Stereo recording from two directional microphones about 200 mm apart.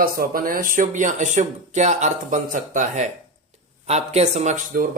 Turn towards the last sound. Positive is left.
turn(degrees=-35)  # may be behind; listen again after turning